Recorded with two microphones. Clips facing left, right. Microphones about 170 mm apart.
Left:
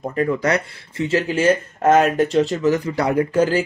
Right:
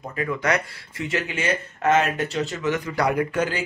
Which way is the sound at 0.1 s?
40° left (ahead or behind).